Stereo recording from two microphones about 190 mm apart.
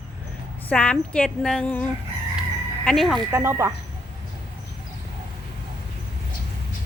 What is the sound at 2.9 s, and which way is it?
Speech, centre (ahead or behind).